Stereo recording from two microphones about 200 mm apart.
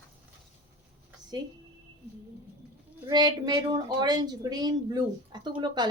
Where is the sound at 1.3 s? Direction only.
20° right (ahead or behind).